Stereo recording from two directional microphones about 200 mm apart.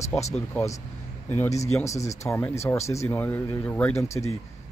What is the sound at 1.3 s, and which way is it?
Speech, 15° left (ahead or behind).